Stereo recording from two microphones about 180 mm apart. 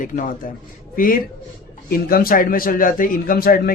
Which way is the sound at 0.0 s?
50° left (ahead or behind).